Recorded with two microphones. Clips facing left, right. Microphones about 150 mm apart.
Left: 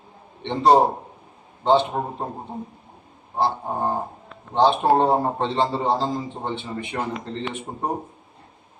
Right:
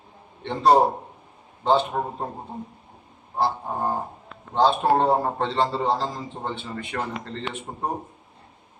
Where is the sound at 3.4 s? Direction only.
20° left (ahead or behind).